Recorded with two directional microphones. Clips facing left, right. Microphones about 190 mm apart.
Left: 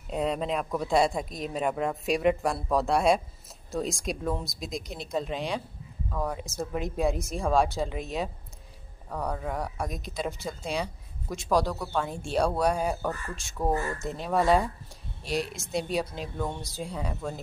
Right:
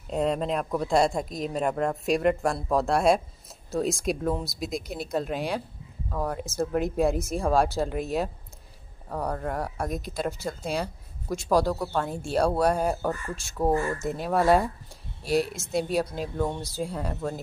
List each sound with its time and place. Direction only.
0.1 s speech: centre (ahead or behind)
13.7 s speech: 25° right (ahead or behind)
13.9 s speech: 5° right (ahead or behind)